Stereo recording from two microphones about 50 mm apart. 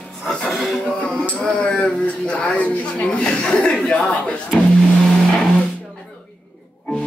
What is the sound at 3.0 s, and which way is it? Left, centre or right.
Speech, centre.